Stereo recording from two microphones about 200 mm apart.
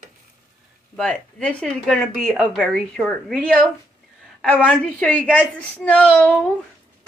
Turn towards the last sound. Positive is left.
turn(degrees=5)  # may be behind; listen again after turning